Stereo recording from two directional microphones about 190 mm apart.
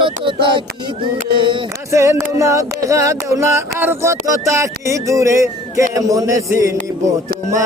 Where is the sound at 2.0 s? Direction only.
15° right (ahead or behind).